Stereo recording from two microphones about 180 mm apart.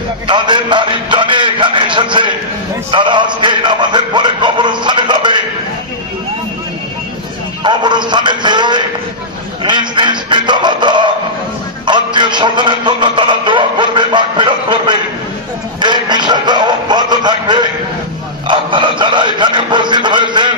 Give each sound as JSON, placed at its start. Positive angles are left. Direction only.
{"t": 0.3, "sound": "music", "side_deg": -25}
{"t": 7.6, "sound": "music", "side_deg": -25}
{"t": 18.5, "sound": "a sound", "side_deg": -25}